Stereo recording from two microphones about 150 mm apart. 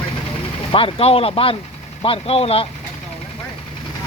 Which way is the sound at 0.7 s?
35° left (ahead or behind).